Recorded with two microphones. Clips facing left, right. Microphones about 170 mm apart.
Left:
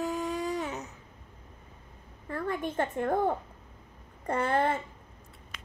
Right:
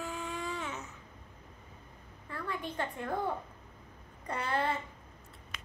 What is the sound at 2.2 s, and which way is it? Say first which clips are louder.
Speech: left 7 dB; 45° left (ahead or behind).